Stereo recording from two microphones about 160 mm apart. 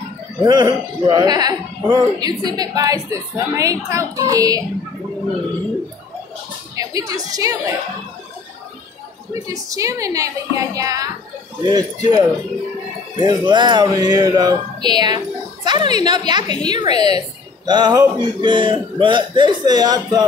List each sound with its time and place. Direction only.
0.4 s a man's voice: 25° right (ahead or behind)
6.7 s music: 20° right (ahead or behind)
7.2 s a man's voice: 20° right (ahead or behind)
9.3 s a man's voice: 20° right (ahead or behind)